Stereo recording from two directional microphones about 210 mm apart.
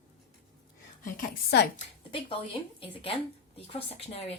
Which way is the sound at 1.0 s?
45° left (ahead or behind).